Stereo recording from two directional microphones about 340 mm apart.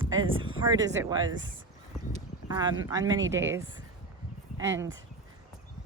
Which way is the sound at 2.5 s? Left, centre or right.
Centre.